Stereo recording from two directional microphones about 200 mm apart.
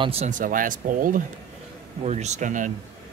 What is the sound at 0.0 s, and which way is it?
Speech, 30° right (ahead or behind).